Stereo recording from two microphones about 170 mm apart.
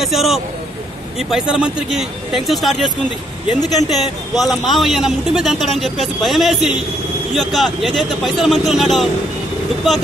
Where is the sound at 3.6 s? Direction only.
20° left (ahead or behind).